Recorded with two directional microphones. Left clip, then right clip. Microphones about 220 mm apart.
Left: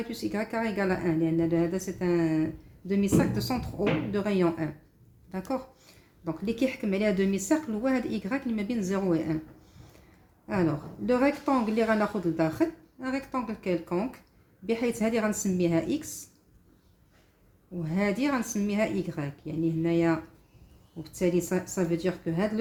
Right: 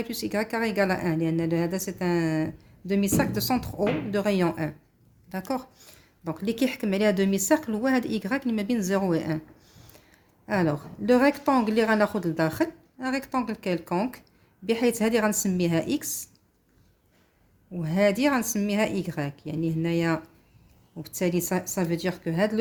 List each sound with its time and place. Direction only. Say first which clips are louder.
0.1 s a woman's voice: right 4 dB; 50° right (ahead or behind)
10.4 s a woman's voice: right 3 dB; 50° right (ahead or behind)
17.8 s a woman's voice: right 6 dB; 50° right (ahead or behind)